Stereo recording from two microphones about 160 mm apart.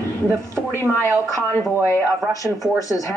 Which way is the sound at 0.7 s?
15° left (ahead or behind).